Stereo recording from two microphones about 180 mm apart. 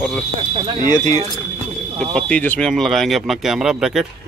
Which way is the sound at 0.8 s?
20° left (ahead or behind).